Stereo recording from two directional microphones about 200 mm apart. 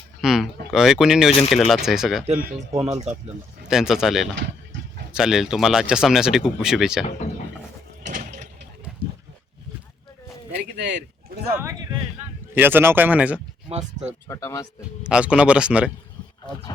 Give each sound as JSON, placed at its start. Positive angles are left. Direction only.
{"t": 0.2, "sound": "a sound", "side_deg": 0}
{"t": 0.7, "sound": "speech", "side_deg": -5}
{"t": 2.7, "sound": "speech", "side_deg": -15}
{"t": 3.7, "sound": "speech", "side_deg": -5}
{"t": 8.0, "sound": "vehicle", "side_deg": -40}
{"t": 10.5, "sound": "a sound", "side_deg": -60}
{"t": 11.5, "sound": "speech", "side_deg": -15}
{"t": 13.7, "sound": "speech", "side_deg": -30}
{"t": 14.3, "sound": "speech", "side_deg": 15}
{"t": 14.8, "sound": "speech", "side_deg": -5}